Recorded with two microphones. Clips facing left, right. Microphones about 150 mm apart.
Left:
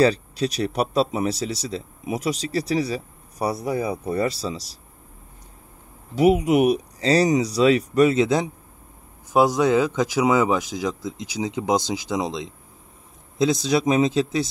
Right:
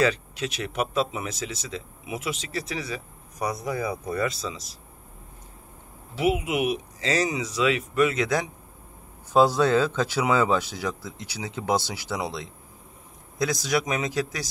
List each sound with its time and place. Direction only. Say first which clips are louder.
0.0 s speech: left 5 dB; 35° left (ahead or behind)
6.1 s speech: left 7 dB; 40° left (ahead or behind)
9.3 s speech: left 2 dB; 15° left (ahead or behind)